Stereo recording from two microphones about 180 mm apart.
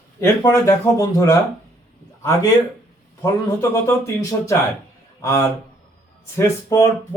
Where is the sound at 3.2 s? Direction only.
15° left (ahead or behind).